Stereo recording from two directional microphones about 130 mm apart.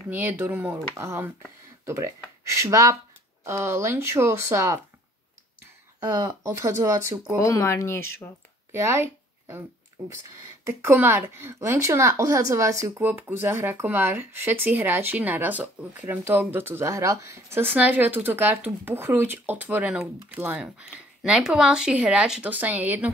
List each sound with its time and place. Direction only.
0.1 s a woman's voice: 15° right (ahead or behind)
5.9 s speech: 25° right (ahead or behind)
7.3 s speech: 25° left (ahead or behind)
8.7 s a sound: 20° right (ahead or behind)
10.6 s a woman's voice: 20° right (ahead or behind)